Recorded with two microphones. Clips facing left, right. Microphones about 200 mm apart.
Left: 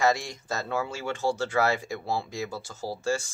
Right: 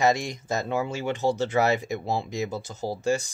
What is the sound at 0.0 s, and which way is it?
Speech, 20° right (ahead or behind).